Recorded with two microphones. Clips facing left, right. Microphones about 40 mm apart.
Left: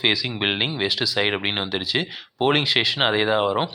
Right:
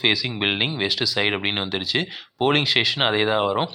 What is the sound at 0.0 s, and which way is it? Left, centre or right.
Speech, centre.